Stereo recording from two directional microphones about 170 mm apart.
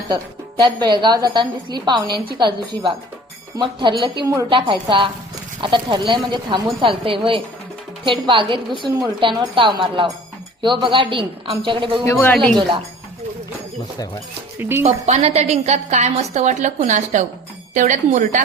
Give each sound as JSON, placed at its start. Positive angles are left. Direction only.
{"t": 0.6, "sound": "a woman's voice", "side_deg": -25}
{"t": 4.3, "sound": "a woman's voice", "side_deg": -20}
{"t": 4.5, "sound": "a woman's voice", "side_deg": -30}
{"t": 12.0, "sound": "speech", "side_deg": 15}
{"t": 14.6, "sound": "a woman's voice", "side_deg": -15}
{"t": 14.8, "sound": "a woman's voice", "side_deg": -40}